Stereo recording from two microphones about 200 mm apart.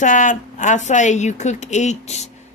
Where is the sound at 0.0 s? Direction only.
40° left (ahead or behind).